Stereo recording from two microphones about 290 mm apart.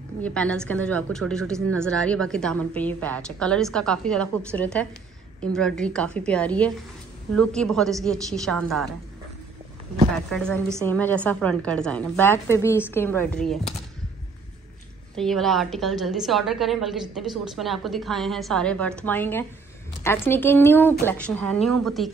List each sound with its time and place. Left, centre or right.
0.2 s a woman's voice: centre
10.3 s a woman's voice: centre
15.1 s a woman's voice: centre